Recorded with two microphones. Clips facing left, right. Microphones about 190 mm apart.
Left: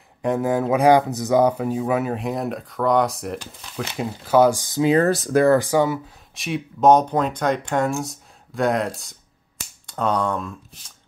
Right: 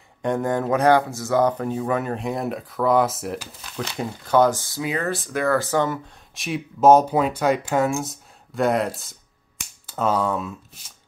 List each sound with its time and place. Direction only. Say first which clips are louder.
0.2 s speech: left 2 dB; 5° left (ahead or behind); by 4.9 s 20° left (ahead or behind)
4.9 s speech: left 8 dB; 40° left (ahead or behind)
5.5 s speech: left 4 dB; 15° left (ahead or behind)
6.3 s speech: left 1 dB; centre (ahead or behind)